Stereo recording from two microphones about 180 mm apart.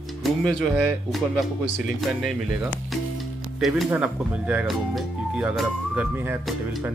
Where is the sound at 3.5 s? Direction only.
Centre (ahead or behind).